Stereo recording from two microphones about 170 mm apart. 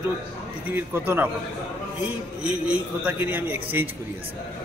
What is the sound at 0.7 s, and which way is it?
Speech, 10° right (ahead or behind).